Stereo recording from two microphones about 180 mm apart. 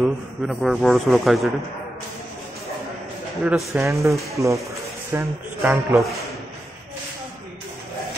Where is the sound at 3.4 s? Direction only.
10° right (ahead or behind).